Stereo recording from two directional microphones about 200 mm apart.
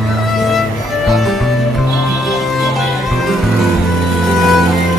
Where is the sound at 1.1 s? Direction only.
Centre (ahead or behind).